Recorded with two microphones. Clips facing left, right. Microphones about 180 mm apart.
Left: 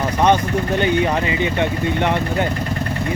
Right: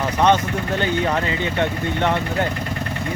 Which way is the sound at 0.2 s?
15° left (ahead or behind).